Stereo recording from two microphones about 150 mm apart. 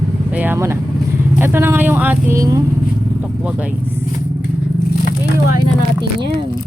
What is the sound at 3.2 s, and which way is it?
Vehicle, 10° right (ahead or behind).